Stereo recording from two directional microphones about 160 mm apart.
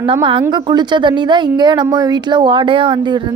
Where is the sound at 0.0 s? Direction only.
30° right (ahead or behind).